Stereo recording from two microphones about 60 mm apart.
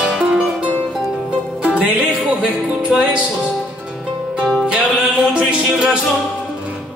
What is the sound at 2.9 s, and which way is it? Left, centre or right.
Music, centre.